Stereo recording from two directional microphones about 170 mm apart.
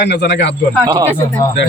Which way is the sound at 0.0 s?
85° left.